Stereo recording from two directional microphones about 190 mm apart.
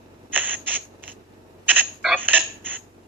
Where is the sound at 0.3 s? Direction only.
10° right (ahead or behind).